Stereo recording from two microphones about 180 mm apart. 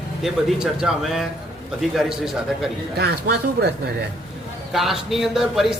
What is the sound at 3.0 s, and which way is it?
Speech, 65° right (ahead or behind).